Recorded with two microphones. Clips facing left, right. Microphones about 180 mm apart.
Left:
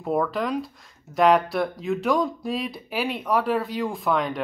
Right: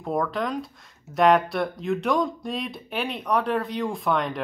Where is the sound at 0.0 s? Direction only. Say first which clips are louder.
Left 2 dB; 5° left (ahead or behind).